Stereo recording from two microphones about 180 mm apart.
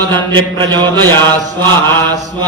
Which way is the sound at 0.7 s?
25° right (ahead or behind).